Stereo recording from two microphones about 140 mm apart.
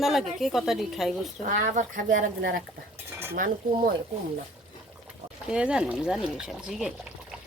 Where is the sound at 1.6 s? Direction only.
65° right (ahead or behind).